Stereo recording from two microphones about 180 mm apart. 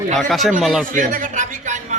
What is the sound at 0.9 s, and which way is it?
Speech, 45° right (ahead or behind).